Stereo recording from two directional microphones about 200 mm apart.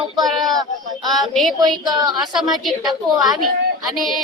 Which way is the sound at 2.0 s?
20° right (ahead or behind).